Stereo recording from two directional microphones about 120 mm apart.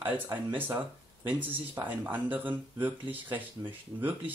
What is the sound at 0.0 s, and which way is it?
Speech, 15° right (ahead or behind).